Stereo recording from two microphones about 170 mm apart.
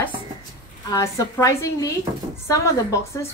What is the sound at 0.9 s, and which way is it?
A woman's voice, 20° left (ahead or behind).